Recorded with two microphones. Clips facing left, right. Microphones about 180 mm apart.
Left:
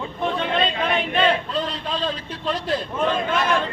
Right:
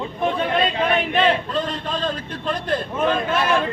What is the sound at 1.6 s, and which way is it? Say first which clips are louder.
A man's voice: right 1 dB; 50° right (ahead or behind).